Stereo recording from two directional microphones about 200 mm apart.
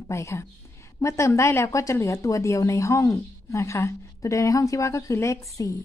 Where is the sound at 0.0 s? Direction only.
15° left (ahead or behind).